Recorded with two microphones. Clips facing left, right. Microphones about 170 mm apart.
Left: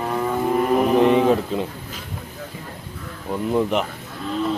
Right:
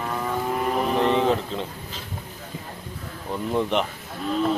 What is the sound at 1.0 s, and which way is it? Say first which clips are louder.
Speech: left 5 dB; 10° left (ahead or behind).